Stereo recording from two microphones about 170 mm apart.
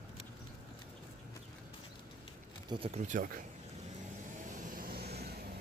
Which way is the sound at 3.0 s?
50° right (ahead or behind).